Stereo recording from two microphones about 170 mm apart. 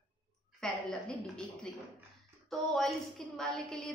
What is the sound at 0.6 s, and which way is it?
A woman's voice, 5° left (ahead or behind).